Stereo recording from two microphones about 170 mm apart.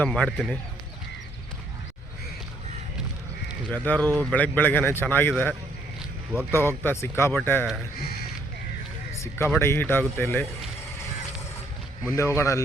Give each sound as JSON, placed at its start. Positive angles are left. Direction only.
{"t": 0.0, "sound": "speech", "side_deg": 5}
{"t": 3.8, "sound": "a man's voice", "side_deg": 10}
{"t": 6.5, "sound": "a man's voice", "side_deg": 15}
{"t": 7.9, "sound": "speech", "side_deg": 65}
{"t": 9.1, "sound": "a man's voice", "side_deg": 15}
{"t": 12.1, "sound": "a man's voice", "side_deg": 15}